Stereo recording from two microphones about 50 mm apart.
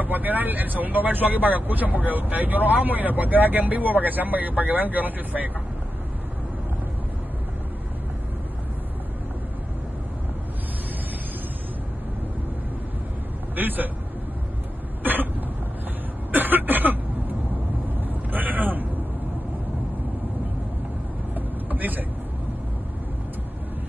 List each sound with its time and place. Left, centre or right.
0.0 s speech: right
13.6 s speech: right
16.3 s vehicle: right
18.3 s a sound: right
21.6 s vehicle: right